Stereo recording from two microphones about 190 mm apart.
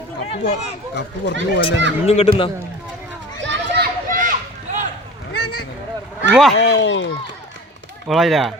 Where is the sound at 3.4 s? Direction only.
65° right (ahead or behind).